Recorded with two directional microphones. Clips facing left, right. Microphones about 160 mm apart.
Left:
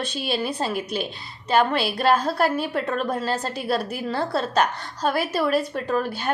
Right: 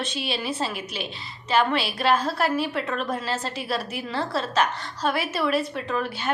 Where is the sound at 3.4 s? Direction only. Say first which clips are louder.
Left 4 dB; 45° left (ahead or behind).